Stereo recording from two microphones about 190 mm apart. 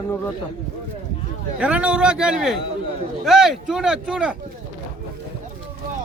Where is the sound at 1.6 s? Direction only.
5° right (ahead or behind).